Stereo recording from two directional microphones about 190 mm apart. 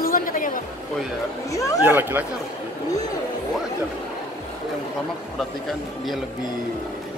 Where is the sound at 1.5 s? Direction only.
15° left (ahead or behind).